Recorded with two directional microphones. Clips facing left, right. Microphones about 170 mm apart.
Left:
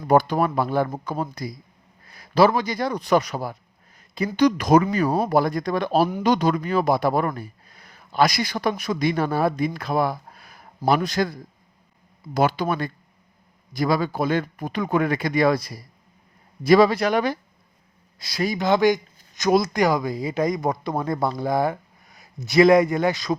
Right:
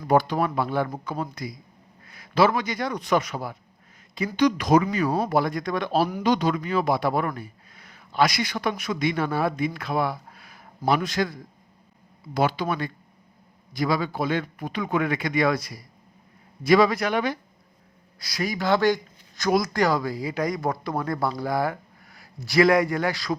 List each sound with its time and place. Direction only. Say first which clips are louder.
0.1 s speech: left 3 dB; 45° left (ahead or behind)
18.2 s speech: left 3 dB; 25° left (ahead or behind)